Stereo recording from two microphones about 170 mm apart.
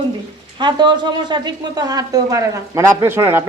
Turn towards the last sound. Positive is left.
turn(degrees=-15)  # may be behind; listen again after turning